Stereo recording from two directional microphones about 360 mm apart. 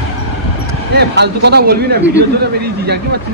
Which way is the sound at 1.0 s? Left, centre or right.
Right.